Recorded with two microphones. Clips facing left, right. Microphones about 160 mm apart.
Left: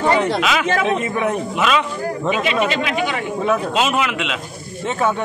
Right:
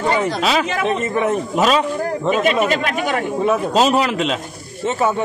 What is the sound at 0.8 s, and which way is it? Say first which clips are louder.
Speech: right 1 dB; centre (ahead or behind).